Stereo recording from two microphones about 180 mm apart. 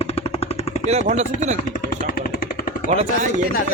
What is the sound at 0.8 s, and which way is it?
Speech, 35° right (ahead or behind).